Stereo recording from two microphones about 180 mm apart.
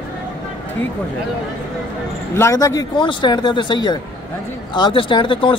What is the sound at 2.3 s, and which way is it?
A woman's voice, 15° left (ahead or behind).